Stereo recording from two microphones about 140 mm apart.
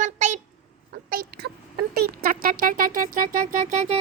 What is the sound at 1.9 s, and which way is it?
Speech, 90° right.